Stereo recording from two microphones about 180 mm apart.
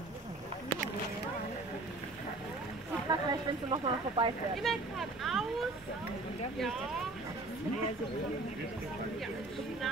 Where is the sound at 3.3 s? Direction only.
25° right (ahead or behind).